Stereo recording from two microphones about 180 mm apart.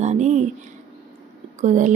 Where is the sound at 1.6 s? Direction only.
45° right (ahead or behind).